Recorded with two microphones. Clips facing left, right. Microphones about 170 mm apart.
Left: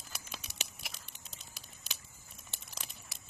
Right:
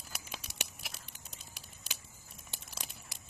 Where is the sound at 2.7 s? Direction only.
5° right (ahead or behind).